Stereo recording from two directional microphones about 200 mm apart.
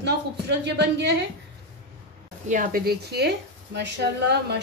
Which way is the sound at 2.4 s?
40° right (ahead or behind).